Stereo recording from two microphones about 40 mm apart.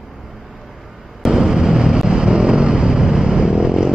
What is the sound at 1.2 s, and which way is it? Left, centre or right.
Vehicle, centre.